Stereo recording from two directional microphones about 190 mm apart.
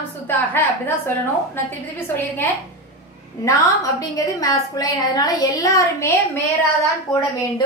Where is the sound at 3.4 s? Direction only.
15° left (ahead or behind).